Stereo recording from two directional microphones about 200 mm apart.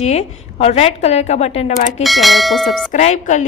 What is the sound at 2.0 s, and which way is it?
Speech, centre (ahead or behind).